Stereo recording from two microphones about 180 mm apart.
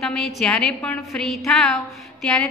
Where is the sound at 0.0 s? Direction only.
Centre (ahead or behind).